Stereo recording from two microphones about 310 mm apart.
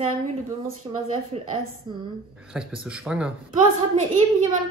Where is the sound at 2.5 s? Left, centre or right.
Centre.